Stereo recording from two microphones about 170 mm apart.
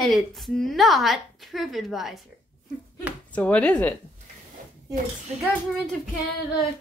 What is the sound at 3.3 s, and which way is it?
Speech, 10° left (ahead or behind).